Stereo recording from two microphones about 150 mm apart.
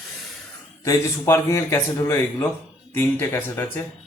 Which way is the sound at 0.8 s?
20° left (ahead or behind).